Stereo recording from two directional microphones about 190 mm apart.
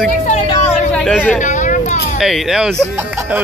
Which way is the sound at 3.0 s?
10° right (ahead or behind).